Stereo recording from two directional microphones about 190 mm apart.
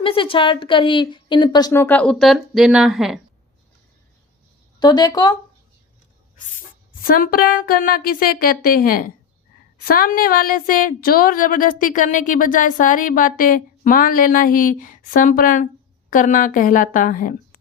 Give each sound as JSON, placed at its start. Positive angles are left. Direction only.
{"t": 0.0, "sound": "a woman's voice", "side_deg": 30}
{"t": 4.8, "sound": "a woman's voice", "side_deg": 20}
{"t": 7.0, "sound": "a woman's voice", "side_deg": 50}